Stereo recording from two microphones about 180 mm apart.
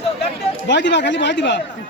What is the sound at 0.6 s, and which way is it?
Speech, 75° left (ahead or behind).